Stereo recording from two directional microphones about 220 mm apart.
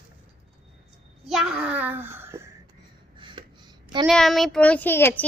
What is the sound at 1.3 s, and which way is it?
A child's voice, 5° right (ahead or behind).